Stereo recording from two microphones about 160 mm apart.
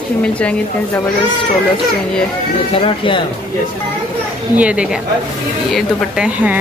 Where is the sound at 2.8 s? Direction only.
35° left (ahead or behind).